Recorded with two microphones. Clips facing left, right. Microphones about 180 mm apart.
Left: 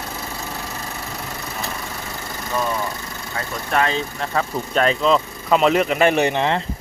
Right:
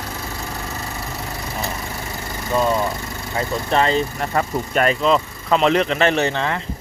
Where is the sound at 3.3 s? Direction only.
20° right (ahead or behind).